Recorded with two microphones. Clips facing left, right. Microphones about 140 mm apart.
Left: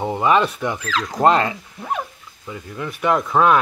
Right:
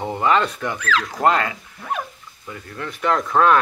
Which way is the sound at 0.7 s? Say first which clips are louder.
Even; 30° left (ahead or behind).